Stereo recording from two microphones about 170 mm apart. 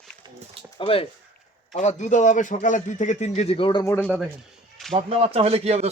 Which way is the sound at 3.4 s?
35° left (ahead or behind).